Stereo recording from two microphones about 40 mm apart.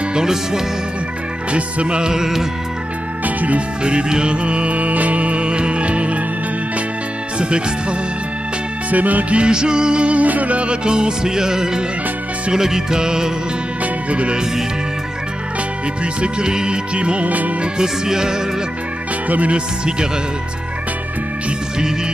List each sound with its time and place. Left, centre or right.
0.1 s music: centre
1.5 s music: right; by 2.4 s centre
3.3 s music: right
3.8 s music: right
7.3 s speech: right
8.9 s music: right
9.3 s music: right
10.2 s music: right; by 13.3 s centre
14.1 s music: right
16.0 s music: right
17.8 s music: centre
19.2 s speech: right